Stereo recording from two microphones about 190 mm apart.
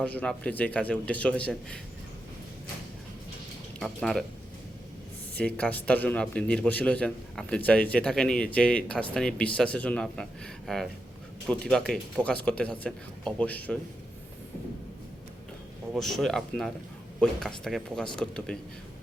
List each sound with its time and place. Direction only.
0.0 s speech: 5° left (ahead or behind)
3.8 s speech: centre (ahead or behind)
5.4 s a man's voice: 5° left (ahead or behind)
16.0 s a man's voice: centre (ahead or behind)